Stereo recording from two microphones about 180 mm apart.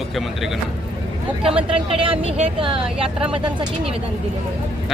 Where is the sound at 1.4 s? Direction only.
30° right (ahead or behind).